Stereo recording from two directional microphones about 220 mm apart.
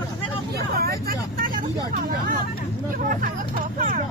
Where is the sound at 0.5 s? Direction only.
45° right (ahead or behind).